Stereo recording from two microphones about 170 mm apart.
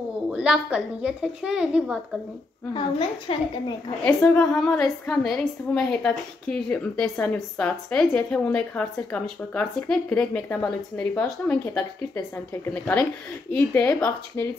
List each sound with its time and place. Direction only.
0.3 s a woman's voice: 5° right (ahead or behind)
2.7 s a woman's voice: 30° left (ahead or behind)
4.0 s a woman's voice: 10° left (ahead or behind)